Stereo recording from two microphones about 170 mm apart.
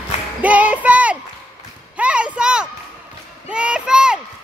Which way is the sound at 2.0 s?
5° right (ahead or behind).